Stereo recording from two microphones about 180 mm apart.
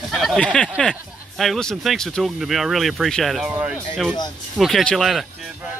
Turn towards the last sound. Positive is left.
turn(degrees=0)  # may be behind; listen again after turning